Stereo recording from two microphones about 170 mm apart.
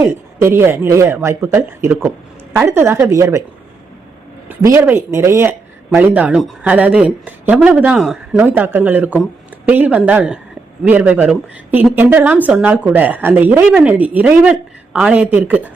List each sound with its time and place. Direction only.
0.0 s speech: 15° right (ahead or behind)
4.4 s speech: 15° right (ahead or behind)